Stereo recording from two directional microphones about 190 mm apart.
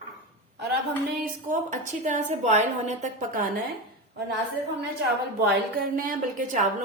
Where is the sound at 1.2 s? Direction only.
40° right (ahead or behind).